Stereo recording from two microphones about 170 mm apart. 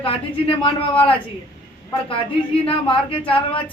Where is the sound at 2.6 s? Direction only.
30° left (ahead or behind).